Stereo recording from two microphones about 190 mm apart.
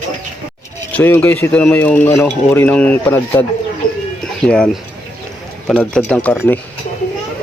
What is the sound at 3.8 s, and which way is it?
Bird, 45° left (ahead or behind).